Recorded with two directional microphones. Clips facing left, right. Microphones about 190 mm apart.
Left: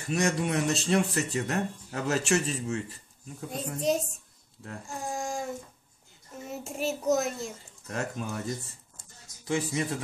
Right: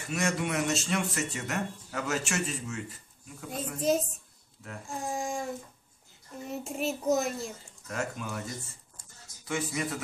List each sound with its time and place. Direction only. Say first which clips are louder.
0.1 s speech: left 3 dB; 35° left (ahead or behind)
3.5 s a child's voice: even; centre (ahead or behind)
7.9 s speech: left 1 dB; 30° left (ahead or behind)
9.0 s a sound: left 1 dB; 25° left (ahead or behind)
9.5 s speech: left 3 dB; 30° left (ahead or behind)